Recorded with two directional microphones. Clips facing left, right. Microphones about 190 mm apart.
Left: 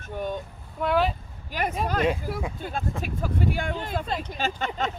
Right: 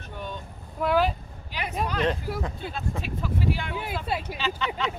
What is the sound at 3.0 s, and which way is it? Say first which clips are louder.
Speech: left 1 dB; 50° left (ahead or behind).